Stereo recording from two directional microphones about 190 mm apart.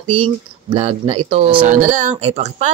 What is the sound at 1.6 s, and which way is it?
Speech, 40° right (ahead or behind).